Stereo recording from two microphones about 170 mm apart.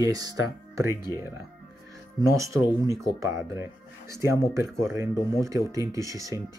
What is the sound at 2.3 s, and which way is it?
Speech, 15° right (ahead or behind).